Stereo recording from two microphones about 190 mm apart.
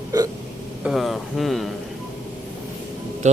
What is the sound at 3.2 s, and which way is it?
Speech, 40° right (ahead or behind).